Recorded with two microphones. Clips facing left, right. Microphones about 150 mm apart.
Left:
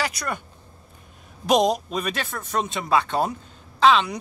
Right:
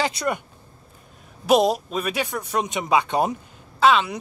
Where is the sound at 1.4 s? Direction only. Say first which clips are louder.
Right 1 dB; 5° right (ahead or behind).